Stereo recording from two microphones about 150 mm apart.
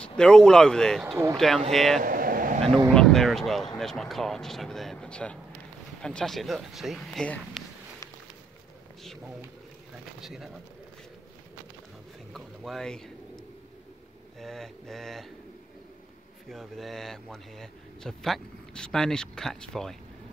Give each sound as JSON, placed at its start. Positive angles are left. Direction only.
{"t": 0.2, "sound": "speech", "side_deg": 5}
{"t": 2.0, "sound": "air conditioning", "side_deg": -70}
{"t": 2.9, "sound": "speech", "side_deg": 5}
{"t": 7.6, "sound": "a sound", "side_deg": 0}
{"t": 10.2, "sound": "speech", "side_deg": 0}
{"t": 12.3, "sound": "bird", "side_deg": 0}
{"t": 14.4, "sound": "speech", "side_deg": 0}
{"t": 16.4, "sound": "speech", "side_deg": 0}